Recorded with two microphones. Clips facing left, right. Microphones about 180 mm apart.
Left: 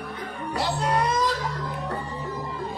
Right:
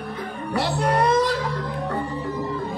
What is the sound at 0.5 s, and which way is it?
Music, 60° right (ahead or behind).